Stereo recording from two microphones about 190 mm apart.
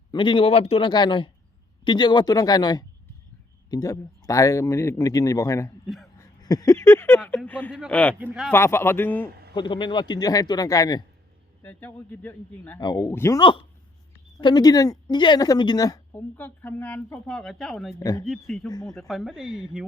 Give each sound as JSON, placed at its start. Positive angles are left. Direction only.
{"t": 0.1, "sound": "a woman's voice", "side_deg": 25}
{"t": 8.5, "sound": "a woman's voice", "side_deg": 15}
{"t": 9.6, "sound": "a woman's voice", "side_deg": 25}
{"t": 12.8, "sound": "a woman's voice", "side_deg": 20}
{"t": 13.4, "sound": "a woman's voice", "side_deg": 25}
{"t": 18.0, "sound": "speech", "side_deg": 20}
{"t": 18.3, "sound": "speech", "side_deg": 0}
{"t": 18.7, "sound": "speech", "side_deg": 20}
{"t": 18.9, "sound": "speech", "side_deg": 0}